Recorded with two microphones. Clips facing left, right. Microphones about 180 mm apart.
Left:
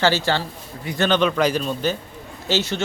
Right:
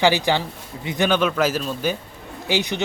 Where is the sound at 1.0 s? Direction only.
10° right (ahead or behind).